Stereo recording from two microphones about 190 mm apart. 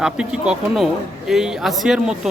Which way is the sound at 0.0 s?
5° right (ahead or behind).